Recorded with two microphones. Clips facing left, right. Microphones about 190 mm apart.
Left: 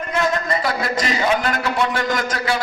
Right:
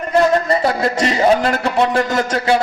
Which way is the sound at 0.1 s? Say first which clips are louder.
Right 7 dB; 35° right (ahead or behind).